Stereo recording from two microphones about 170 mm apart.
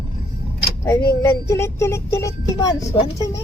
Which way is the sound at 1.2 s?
15° left (ahead or behind).